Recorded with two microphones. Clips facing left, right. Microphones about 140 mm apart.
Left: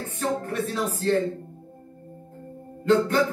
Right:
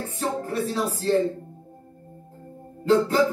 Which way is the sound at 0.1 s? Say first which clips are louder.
Left 1 dB; 30° right (ahead or behind).